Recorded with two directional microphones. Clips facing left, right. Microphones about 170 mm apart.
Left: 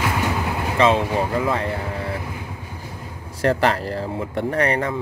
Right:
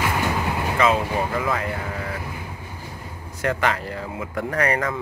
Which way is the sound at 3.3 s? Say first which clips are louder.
Left 4 dB; 35° left (ahead or behind).